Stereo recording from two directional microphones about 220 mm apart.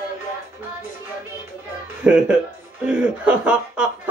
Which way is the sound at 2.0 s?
5° right (ahead or behind).